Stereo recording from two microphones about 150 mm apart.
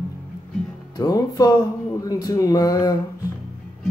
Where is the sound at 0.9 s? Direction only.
25° left (ahead or behind).